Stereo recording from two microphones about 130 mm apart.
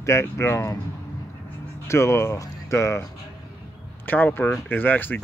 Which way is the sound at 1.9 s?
20° left (ahead or behind).